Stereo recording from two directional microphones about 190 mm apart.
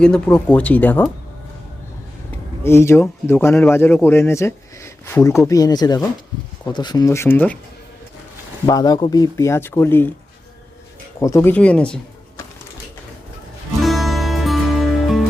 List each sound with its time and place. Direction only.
0.0 s speech: 5° left (ahead or behind)
2.6 s speech: 15° left (ahead or behind)
8.6 s speech: 20° left (ahead or behind)
11.2 s speech: 15° left (ahead or behind)
13.8 s music: centre (ahead or behind)